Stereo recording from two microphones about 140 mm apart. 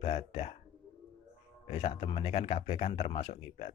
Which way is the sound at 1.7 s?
45° left (ahead or behind).